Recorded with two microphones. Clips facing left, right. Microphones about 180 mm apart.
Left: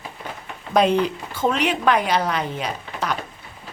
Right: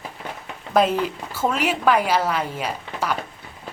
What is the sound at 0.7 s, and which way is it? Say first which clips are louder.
A woman's voice: left 1 dB; 5° right (ahead or behind).